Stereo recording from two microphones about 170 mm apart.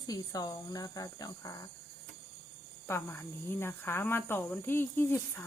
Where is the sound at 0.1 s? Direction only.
25° left (ahead or behind).